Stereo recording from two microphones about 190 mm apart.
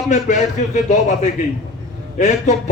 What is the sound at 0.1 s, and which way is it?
Speech, 40° left (ahead or behind).